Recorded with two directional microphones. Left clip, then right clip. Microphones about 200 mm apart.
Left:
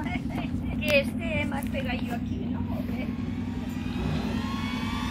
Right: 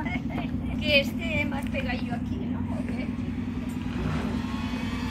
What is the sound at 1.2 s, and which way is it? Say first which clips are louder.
Speech: right 1 dB; centre (ahead or behind).